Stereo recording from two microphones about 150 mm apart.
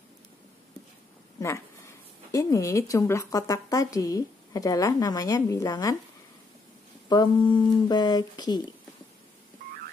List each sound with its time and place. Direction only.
1.4 s speech: 20° left (ahead or behind)
7.1 s speech: 30° left (ahead or behind)